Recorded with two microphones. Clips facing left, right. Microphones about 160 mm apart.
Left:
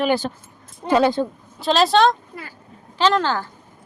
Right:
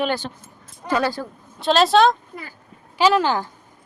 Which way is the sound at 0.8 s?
25° left (ahead or behind).